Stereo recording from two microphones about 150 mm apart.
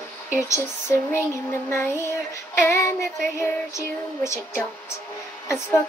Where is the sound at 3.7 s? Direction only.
20° left (ahead or behind).